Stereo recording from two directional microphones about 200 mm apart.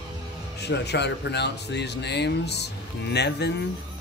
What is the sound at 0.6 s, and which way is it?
Speech, 55° left (ahead or behind).